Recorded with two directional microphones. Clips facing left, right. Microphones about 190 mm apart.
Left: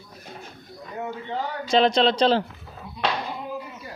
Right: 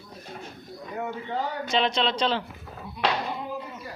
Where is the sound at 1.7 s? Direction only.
40° left (ahead or behind).